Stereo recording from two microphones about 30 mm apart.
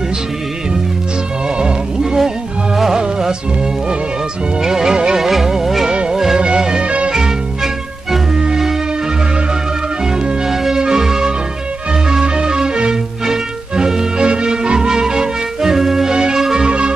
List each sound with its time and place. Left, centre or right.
1.6 s music: right
2.1 s music: centre
4.6 s music: centre
6.8 s music: right
7.2 s music: centre
10.4 s music: centre
12.6 s music: right
16.5 s music: right